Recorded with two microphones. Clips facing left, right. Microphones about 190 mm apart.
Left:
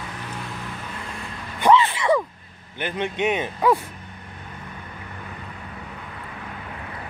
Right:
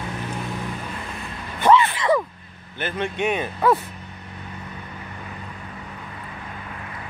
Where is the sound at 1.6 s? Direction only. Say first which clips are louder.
Even; 20° left (ahead or behind).